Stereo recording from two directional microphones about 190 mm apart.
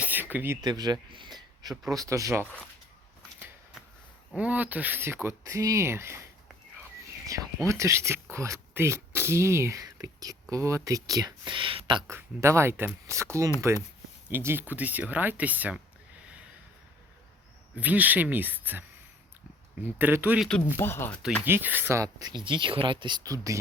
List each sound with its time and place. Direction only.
0.0 s speech: 10° right (ahead or behind)
1.7 s speech: centre (ahead or behind)
2.0 s speech: 15° right (ahead or behind)
4.4 s speech: 10° right (ahead or behind); by 12.1 s 25° right (ahead or behind)
12.1 s speech: 15° right (ahead or behind)
17.7 s speech: 10° right (ahead or behind)
20.0 s speech: 10° right (ahead or behind)
20.7 s speech: 10° left (ahead or behind)
21.4 s speech: 10° right (ahead or behind)